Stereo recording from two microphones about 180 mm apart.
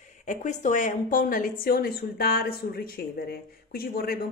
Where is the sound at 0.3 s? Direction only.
45° left (ahead or behind).